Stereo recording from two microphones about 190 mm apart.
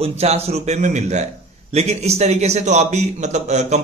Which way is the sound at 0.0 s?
35° right (ahead or behind).